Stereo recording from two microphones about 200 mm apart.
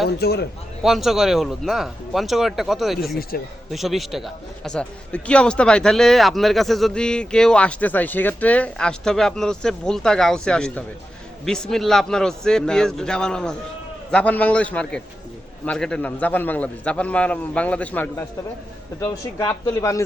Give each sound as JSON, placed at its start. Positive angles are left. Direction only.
{"t": 0.1, "sound": "a man's voice", "side_deg": 55}
{"t": 0.8, "sound": "a man's voice", "side_deg": 0}
{"t": 3.3, "sound": "a man's voice", "side_deg": 45}
{"t": 3.7, "sound": "a man's voice", "side_deg": 0}